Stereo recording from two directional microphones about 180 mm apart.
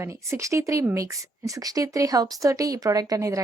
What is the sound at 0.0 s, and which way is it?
A woman's voice, 15° right (ahead or behind).